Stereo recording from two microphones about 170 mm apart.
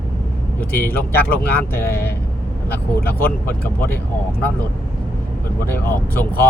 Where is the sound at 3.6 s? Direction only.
15° left (ahead or behind).